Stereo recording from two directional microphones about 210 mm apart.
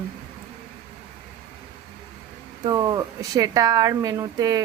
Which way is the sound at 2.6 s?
20° right (ahead or behind).